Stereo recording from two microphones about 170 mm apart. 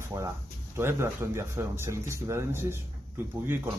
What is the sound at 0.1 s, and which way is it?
Speech, 20° right (ahead or behind).